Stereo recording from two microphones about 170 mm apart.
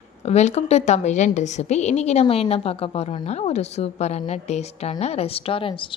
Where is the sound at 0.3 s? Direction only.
40° left (ahead or behind).